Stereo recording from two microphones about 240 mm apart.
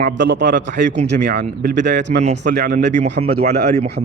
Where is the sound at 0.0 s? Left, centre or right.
Right.